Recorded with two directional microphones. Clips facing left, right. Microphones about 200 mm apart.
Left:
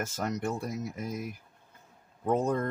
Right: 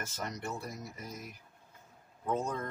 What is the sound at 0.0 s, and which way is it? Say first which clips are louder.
Speech: left 8 dB; 50° left (ahead or behind).